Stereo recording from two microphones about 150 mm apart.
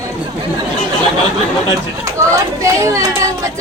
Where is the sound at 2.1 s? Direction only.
20° right (ahead or behind).